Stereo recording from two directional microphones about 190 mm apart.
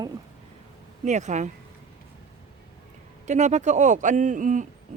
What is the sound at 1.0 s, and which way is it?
Speech, 40° right (ahead or behind).